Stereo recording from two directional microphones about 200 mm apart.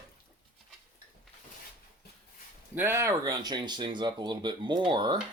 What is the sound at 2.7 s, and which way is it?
Speech, 10° right (ahead or behind).